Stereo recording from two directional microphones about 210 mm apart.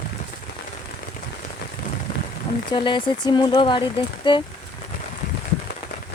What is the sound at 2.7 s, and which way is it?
Speech, 25° left (ahead or behind).